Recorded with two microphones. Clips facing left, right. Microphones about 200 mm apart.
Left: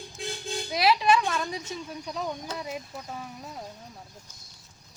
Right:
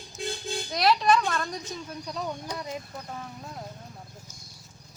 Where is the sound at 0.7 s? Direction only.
5° left (ahead or behind).